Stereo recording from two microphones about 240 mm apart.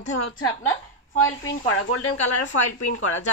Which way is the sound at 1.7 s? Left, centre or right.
Left.